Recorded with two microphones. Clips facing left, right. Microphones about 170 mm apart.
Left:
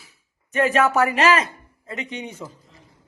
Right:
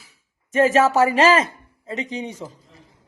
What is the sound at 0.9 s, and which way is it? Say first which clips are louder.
Speech: right 3 dB; 35° right (ahead or behind).